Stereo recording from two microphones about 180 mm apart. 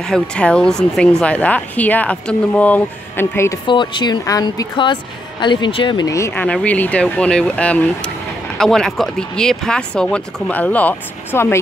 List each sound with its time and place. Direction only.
0.0 s speech: 5° left (ahead or behind)
3.6 s speech: 25° left (ahead or behind)